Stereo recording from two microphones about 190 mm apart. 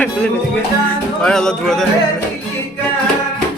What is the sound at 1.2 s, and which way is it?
Speech, 5° left (ahead or behind).